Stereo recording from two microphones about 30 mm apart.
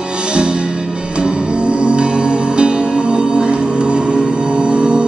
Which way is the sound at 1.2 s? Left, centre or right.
Right.